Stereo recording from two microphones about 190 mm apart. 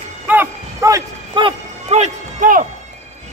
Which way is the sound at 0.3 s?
15° right (ahead or behind).